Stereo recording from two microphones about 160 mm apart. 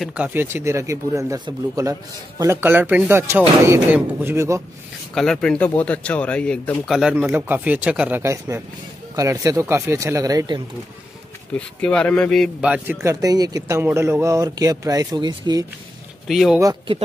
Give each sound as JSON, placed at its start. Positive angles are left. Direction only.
{"t": 0.0, "sound": "speech", "side_deg": -5}
{"t": 5.1, "sound": "speech", "side_deg": 5}
{"t": 6.9, "sound": "speech", "side_deg": -5}
{"t": 11.5, "sound": "speech", "side_deg": 5}
{"t": 12.6, "sound": "speech", "side_deg": -5}
{"t": 16.3, "sound": "speech", "side_deg": 0}